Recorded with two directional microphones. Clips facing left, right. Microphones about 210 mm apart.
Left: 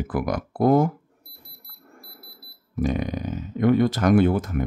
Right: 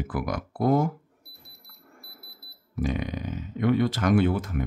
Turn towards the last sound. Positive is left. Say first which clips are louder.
# left 4 dB
turn(degrees=45)  # may be behind; listen again after turning